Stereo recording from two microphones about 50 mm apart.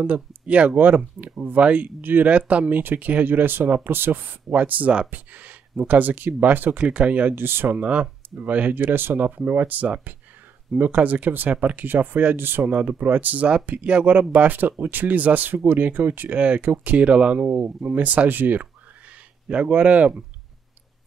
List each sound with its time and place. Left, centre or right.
0.0 s speech: right
2.0 s speech: right
2.2 s speech: right
6.8 s speech: right
7.3 s speech: right
7.7 s speech: right
11.8 s speech: right
12.6 s speech: right
19.4 s speech: right